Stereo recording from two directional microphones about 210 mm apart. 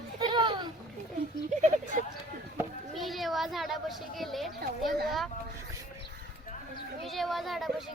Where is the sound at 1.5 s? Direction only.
35° right (ahead or behind).